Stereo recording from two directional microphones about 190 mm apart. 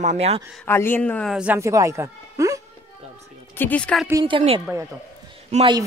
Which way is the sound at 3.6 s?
5° left (ahead or behind).